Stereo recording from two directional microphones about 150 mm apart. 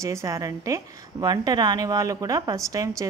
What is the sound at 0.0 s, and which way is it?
A woman's voice, 20° right (ahead or behind).